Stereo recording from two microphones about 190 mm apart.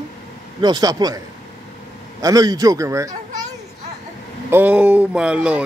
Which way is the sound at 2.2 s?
20° right (ahead or behind).